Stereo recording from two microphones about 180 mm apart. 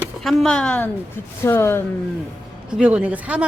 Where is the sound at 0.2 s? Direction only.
Centre (ahead or behind).